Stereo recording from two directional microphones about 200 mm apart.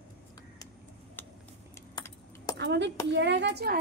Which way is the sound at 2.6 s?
55° right (ahead or behind).